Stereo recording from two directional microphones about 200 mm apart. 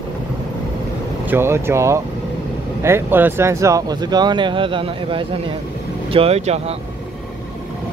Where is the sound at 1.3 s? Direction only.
10° right (ahead or behind); by 6.6 s 30° right (ahead or behind).